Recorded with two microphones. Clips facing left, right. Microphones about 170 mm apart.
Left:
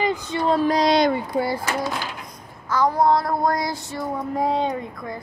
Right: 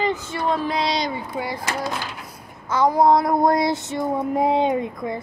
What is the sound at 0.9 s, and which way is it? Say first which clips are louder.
Speech: left 7 dB; 55° left (ahead or behind).